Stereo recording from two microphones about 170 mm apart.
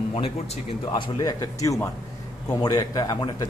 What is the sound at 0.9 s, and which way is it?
A man's voice, 25° left (ahead or behind).